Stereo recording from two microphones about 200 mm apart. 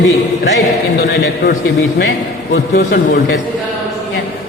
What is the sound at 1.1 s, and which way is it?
Speech, 45° left (ahead or behind).